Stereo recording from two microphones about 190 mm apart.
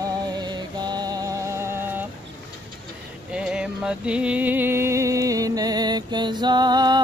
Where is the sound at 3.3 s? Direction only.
5° right (ahead or behind).